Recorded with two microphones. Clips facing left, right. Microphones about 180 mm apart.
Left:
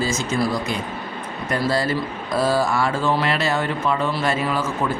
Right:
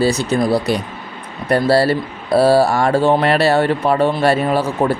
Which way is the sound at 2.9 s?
65° right (ahead or behind).